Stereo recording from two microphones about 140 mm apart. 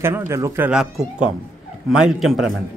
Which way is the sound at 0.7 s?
5° right (ahead or behind).